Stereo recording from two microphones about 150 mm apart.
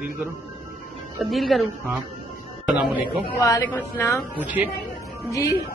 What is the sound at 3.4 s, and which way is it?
Speech, 20° left (ahead or behind).